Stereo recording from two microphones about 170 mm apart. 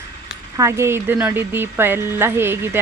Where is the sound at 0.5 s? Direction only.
15° right (ahead or behind).